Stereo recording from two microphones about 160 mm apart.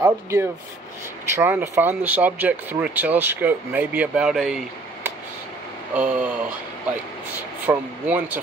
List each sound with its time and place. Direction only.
0.0 s speech: 15° right (ahead or behind)
5.9 s speech: 10° right (ahead or behind)
7.6 s speech: 10° right (ahead or behind)